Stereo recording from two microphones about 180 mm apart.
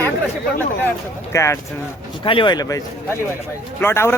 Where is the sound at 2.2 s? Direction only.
30° left (ahead or behind).